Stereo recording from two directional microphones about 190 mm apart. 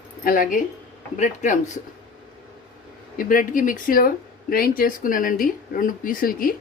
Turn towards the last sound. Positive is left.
turn(degrees=50)  # may be behind; listen again after turning